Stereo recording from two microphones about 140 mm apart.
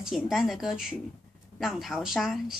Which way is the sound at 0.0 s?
5° right (ahead or behind).